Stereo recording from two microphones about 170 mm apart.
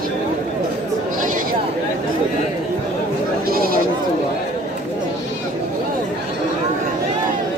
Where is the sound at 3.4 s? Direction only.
60° right (ahead or behind).